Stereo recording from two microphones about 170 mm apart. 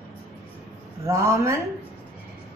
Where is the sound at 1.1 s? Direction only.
15° right (ahead or behind).